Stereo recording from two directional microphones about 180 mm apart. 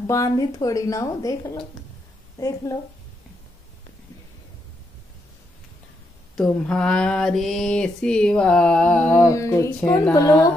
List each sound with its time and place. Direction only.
0.0 s speech: 20° left (ahead or behind)
2.4 s music: 20° left (ahead or behind)
6.3 s a sound: 5° left (ahead or behind)
10.1 s music: 15° left (ahead or behind)